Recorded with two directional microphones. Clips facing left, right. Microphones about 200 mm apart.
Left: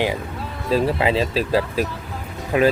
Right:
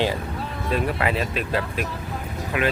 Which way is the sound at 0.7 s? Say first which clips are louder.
Left 5 dB; 30° left (ahead or behind).